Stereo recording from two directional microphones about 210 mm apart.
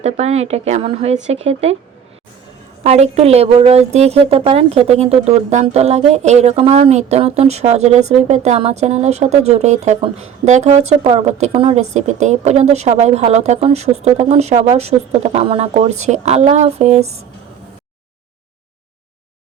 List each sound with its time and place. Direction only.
0.0 s speech: 30° right (ahead or behind)
2.8 s a woman's voice: 30° right (ahead or behind)